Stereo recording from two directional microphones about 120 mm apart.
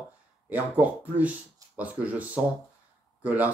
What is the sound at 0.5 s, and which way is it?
Speech, 15° right (ahead or behind).